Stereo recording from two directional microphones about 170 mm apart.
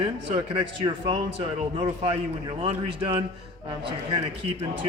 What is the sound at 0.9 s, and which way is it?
A man's voice, 25° right (ahead or behind).